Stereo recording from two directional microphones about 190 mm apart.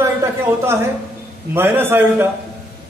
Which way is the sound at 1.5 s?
10° right (ahead or behind).